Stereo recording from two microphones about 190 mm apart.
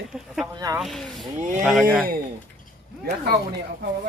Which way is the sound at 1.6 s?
Centre (ahead or behind).